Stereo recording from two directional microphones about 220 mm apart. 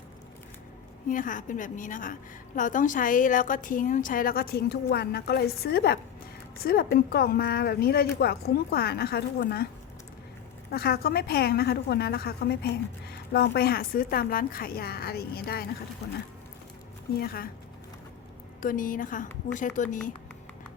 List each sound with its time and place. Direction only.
1.0 s a woman's voice: 35° left (ahead or behind)
10.7 s a woman's voice: 45° left (ahead or behind)
17.2 s a woman's voice: 45° left (ahead or behind)
18.6 s a woman's voice: 40° left (ahead or behind)